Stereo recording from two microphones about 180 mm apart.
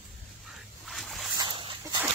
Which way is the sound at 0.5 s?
Centre (ahead or behind).